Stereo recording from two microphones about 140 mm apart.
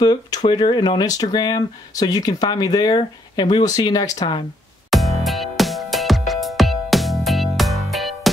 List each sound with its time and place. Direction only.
0.0 s speech: 30° left (ahead or behind)
4.9 s music: centre (ahead or behind)